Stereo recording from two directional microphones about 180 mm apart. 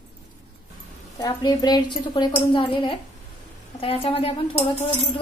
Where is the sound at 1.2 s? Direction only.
25° left (ahead or behind).